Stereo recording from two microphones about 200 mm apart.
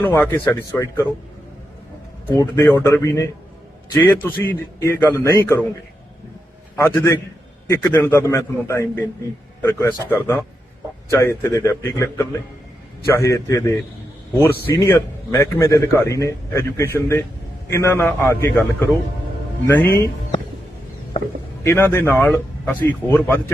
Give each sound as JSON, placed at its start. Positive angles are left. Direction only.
{"t": 0.0, "sound": "a man's voice", "side_deg": 10}
{"t": 2.3, "sound": "a man's voice", "side_deg": 15}
{"t": 6.7, "sound": "a man's voice", "side_deg": 10}
{"t": 19.6, "sound": "a man's voice", "side_deg": 10}
{"t": 21.6, "sound": "a man's voice", "side_deg": 15}